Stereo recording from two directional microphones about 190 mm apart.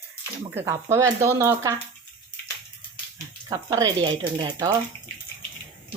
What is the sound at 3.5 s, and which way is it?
Speech, 20° right (ahead or behind).